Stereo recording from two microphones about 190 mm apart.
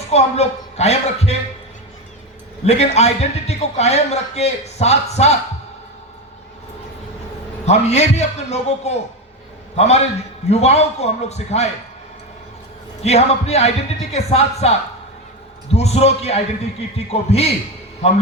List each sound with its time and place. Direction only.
0.1 s a man's voice: 35° left (ahead or behind)
2.6 s a man's voice: 35° left (ahead or behind)
7.6 s a man's voice: 35° left (ahead or behind)
13.0 s a man's voice: 35° left (ahead or behind)
15.7 s a man's voice: 35° left (ahead or behind)